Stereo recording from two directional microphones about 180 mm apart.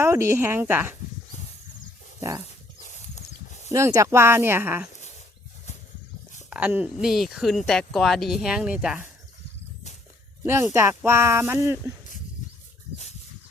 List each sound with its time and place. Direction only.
0.0 s speech: 15° right (ahead or behind)
2.8 s horse: 40° left (ahead or behind)
3.7 s speech: 15° right (ahead or behind)
6.5 s speech: 10° right (ahead or behind)
10.4 s speech: 15° right (ahead or behind)